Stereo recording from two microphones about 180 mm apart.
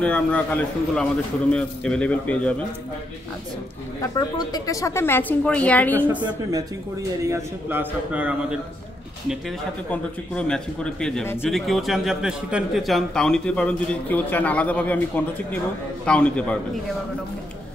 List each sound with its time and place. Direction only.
0.0 s a woman's voice: 5° left (ahead or behind)
4.0 s a woman's voice: 20° left (ahead or behind)
5.9 s a man's voice: 15° right (ahead or behind)
9.8 s a woman's voice: 5° left (ahead or behind)